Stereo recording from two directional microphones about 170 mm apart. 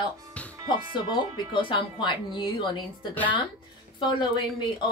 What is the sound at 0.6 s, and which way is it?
Speech, 30° left (ahead or behind).